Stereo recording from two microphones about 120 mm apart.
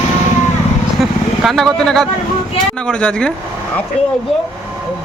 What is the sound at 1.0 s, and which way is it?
Vehicle, centre (ahead or behind).